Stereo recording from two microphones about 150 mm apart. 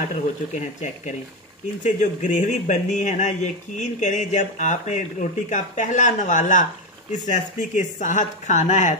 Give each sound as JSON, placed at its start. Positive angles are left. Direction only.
{"t": 0.1, "sound": "speech", "side_deg": 50}